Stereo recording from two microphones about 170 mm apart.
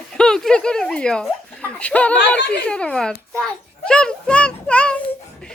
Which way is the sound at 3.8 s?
5° left (ahead or behind).